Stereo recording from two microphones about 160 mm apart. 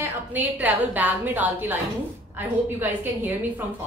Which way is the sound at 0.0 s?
10° right (ahead or behind).